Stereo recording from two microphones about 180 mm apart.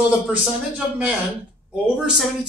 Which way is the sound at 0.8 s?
5° right (ahead or behind).